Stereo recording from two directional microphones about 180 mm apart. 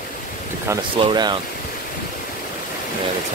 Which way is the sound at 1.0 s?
25° right (ahead or behind).